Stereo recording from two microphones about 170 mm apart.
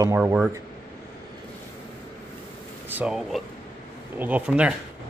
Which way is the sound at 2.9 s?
5° right (ahead or behind).